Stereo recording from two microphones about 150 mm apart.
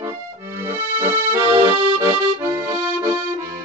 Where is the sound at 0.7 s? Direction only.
15° right (ahead or behind).